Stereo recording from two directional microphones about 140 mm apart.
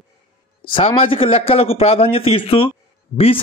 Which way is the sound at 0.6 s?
40° left (ahead or behind).